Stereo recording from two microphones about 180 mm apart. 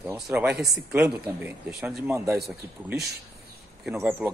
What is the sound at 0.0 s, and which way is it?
Speech, 10° right (ahead or behind).